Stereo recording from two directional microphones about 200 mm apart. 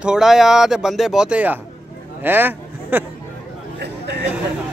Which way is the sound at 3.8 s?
55° right (ahead or behind).